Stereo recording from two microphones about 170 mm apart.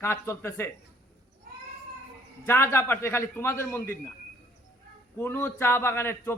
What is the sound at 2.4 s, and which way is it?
A man's voice, 15° left (ahead or behind).